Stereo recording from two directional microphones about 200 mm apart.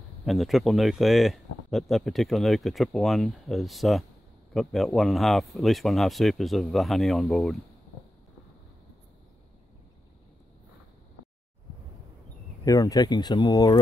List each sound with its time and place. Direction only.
0.2 s speech: centre (ahead or behind)
12.6 s speech: 15° left (ahead or behind)